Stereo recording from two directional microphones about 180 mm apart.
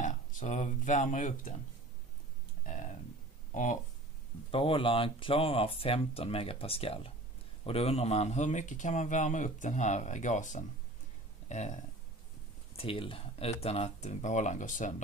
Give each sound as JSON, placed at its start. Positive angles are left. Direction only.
{"t": 0.0, "sound": "speech", "side_deg": 45}
{"t": 2.6, "sound": "a sound", "side_deg": 45}
{"t": 4.5, "sound": "speech", "side_deg": 30}